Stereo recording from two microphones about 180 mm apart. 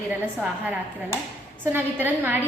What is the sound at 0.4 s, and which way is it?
A woman's voice, 10° right (ahead or behind).